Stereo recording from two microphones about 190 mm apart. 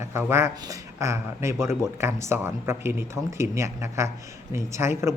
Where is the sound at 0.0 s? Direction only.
15° right (ahead or behind).